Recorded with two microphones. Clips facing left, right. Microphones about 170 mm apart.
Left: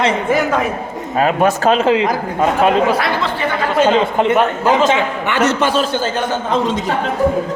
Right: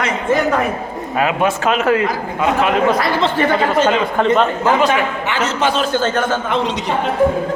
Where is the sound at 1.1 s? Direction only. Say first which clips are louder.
Left 3 dB; 40° left (ahead or behind).